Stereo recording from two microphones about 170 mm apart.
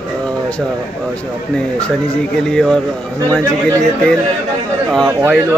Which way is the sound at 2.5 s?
5° left (ahead or behind).